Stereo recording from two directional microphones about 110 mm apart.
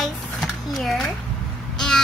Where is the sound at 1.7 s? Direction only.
5° left (ahead or behind).